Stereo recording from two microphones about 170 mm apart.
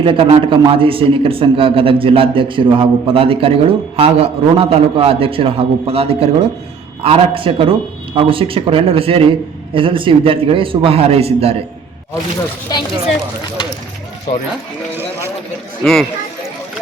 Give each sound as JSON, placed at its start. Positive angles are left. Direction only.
{"t": 0.0, "sound": "a man's voice", "side_deg": -30}
{"t": 12.7, "sound": "speech", "side_deg": 25}
{"t": 15.8, "sound": "speech", "side_deg": 0}